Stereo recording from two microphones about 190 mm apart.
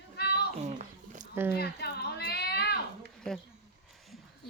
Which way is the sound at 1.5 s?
55° left (ahead or behind).